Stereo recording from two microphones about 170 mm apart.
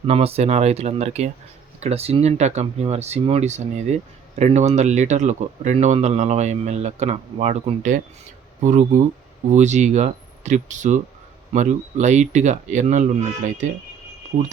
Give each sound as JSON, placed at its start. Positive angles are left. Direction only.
{"t": 0.0, "sound": "speech", "side_deg": -35}